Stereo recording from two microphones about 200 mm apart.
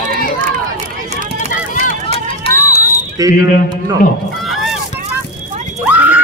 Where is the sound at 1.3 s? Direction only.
40° left (ahead or behind).